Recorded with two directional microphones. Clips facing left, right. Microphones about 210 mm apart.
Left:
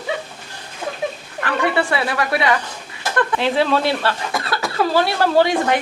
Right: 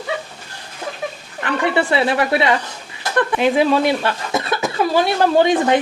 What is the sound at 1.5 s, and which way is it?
Speech, 20° right (ahead or behind).